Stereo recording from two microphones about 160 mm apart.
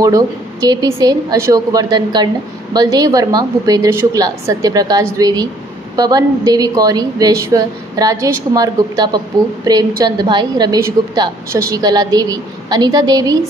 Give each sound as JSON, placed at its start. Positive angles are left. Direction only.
{"t": 0.0, "sound": "a woman's voice", "side_deg": -20}